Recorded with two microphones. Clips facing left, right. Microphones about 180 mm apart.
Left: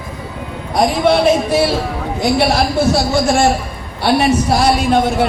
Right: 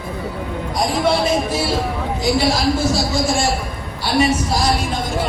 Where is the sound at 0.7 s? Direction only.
65° left (ahead or behind).